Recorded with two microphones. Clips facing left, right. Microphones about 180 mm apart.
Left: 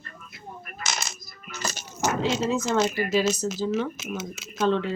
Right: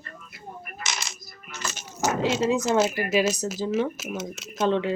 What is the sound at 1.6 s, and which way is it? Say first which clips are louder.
Coin: left 2 dB; 40° left (ahead or behind).